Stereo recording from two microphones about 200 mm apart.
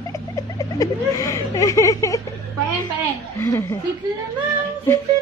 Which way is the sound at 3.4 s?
15° left (ahead or behind).